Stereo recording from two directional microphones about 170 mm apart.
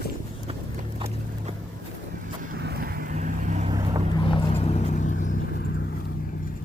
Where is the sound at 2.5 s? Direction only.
70° right (ahead or behind).